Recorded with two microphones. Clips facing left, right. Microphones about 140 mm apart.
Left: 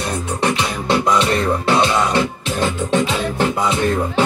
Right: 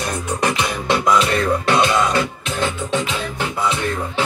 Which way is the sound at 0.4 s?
30° left (ahead or behind).